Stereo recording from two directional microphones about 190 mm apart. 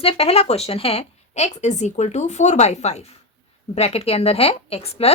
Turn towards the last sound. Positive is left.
turn(degrees=30)  # may be behind; listen again after turning